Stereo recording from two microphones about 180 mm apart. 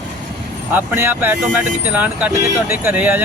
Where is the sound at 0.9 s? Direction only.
10° right (ahead or behind).